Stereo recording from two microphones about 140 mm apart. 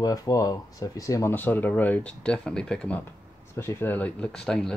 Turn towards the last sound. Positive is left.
turn(degrees=5)  # may be behind; listen again after turning